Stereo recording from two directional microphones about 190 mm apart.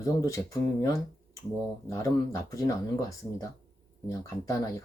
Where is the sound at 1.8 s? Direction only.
15° left (ahead or behind).